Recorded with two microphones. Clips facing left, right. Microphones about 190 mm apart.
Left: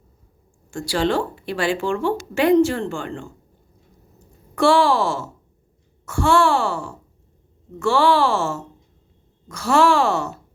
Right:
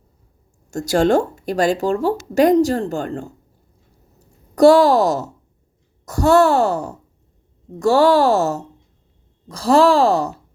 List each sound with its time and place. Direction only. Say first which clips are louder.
0.7 s speech: right 6 dB; 45° right (ahead or behind)
4.5 s speech: right 6 dB; 40° right (ahead or behind)